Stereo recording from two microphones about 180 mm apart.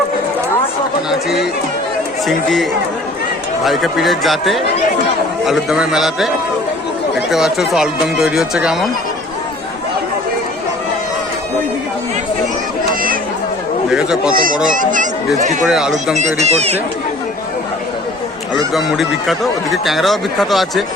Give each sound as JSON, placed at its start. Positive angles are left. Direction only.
{"t": 2.2, "sound": "speech", "side_deg": 0}
{"t": 13.9, "sound": "speech", "side_deg": -5}
{"t": 14.3, "sound": "speech", "side_deg": -50}
{"t": 15.6, "sound": "speech", "side_deg": 0}
{"t": 16.1, "sound": "speech", "side_deg": -40}
{"t": 18.7, "sound": "speech", "side_deg": 0}